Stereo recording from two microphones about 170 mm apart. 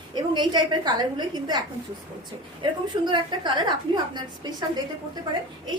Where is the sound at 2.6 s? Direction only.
25° right (ahead or behind).